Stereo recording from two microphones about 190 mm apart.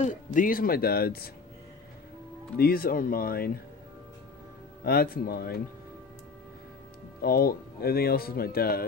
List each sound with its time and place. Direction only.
0.0 s speech: 45° left (ahead or behind)
2.5 s speech: 50° left (ahead or behind)
4.8 s speech: 50° left (ahead or behind)
7.2 s speech: 50° left (ahead or behind)